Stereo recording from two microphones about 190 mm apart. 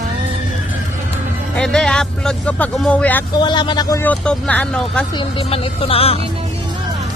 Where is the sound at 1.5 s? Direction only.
5° left (ahead or behind).